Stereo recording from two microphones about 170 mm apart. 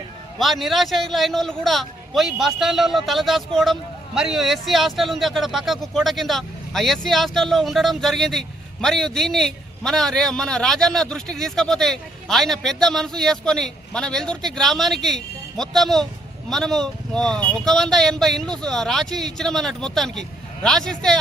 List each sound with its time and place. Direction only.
0.3 s a man's voice: centre (ahead or behind)